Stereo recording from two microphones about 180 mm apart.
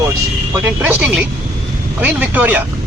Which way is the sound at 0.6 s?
10° right (ahead or behind).